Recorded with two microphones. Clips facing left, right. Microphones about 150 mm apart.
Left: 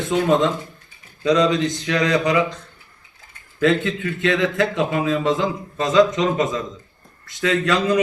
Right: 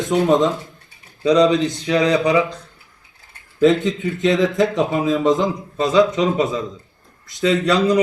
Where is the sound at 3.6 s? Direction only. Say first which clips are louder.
Right 3 dB; 15° right (ahead or behind).